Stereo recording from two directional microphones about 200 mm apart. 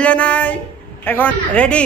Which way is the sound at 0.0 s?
5° left (ahead or behind).